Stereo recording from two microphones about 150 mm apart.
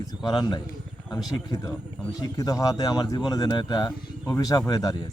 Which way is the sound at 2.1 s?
25° left (ahead or behind).